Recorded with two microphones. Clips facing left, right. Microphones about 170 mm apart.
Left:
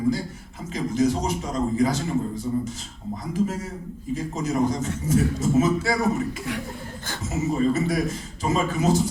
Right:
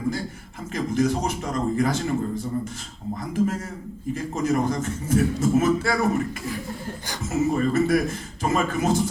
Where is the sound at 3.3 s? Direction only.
55° right (ahead or behind).